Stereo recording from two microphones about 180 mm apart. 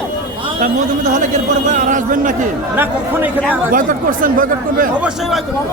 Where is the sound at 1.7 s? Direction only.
45° right (ahead or behind).